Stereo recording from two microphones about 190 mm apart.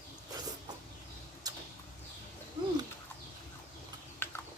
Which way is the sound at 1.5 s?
20° right (ahead or behind).